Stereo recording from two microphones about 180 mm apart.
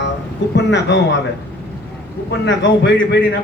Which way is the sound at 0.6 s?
70° left (ahead or behind).